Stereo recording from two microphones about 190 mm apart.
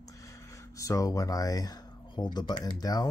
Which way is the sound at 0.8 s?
15° left (ahead or behind).